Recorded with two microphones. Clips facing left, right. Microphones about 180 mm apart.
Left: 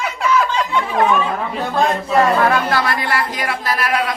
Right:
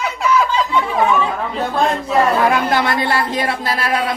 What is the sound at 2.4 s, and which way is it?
Speech, 20° right (ahead or behind).